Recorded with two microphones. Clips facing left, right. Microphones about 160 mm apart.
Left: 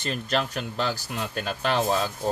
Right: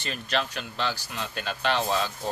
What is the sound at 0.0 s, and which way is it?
Speech, 45° left (ahead or behind).